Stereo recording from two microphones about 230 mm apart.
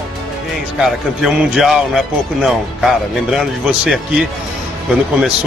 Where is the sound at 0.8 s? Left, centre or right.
Centre.